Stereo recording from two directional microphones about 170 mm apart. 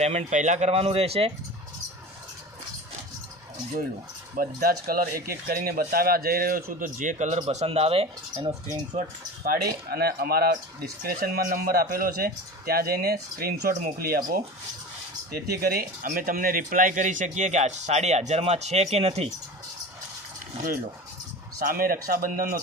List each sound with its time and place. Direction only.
0.0 s speech: 40° right (ahead or behind)
4.4 s speech: 60° right (ahead or behind); by 8.5 s 35° right (ahead or behind)
9.0 s speech: 55° right (ahead or behind)
15.3 s speech: 65° right (ahead or behind); by 19.3 s 35° right (ahead or behind)
21.6 s speech: 55° right (ahead or behind)